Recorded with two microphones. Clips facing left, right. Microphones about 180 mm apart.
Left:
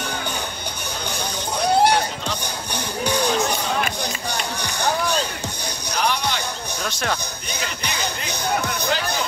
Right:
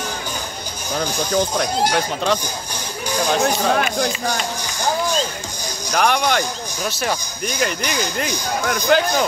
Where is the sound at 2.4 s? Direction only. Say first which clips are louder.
Left 1 dB; 65° left (ahead or behind).